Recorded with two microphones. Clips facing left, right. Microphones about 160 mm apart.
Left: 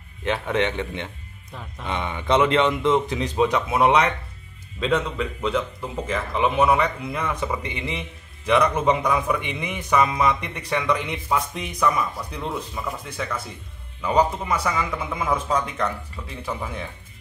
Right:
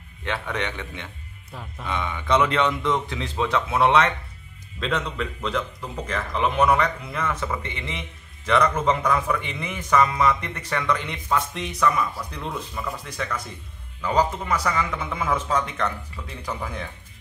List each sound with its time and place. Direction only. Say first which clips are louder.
0.2 s a man's voice: left 5 dB; 20° left (ahead or behind)